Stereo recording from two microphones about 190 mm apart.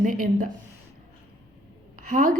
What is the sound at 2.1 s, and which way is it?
Speech, 45° right (ahead or behind).